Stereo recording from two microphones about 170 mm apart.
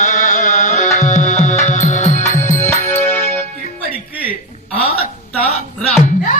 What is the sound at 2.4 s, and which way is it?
Music, 15° left (ahead or behind).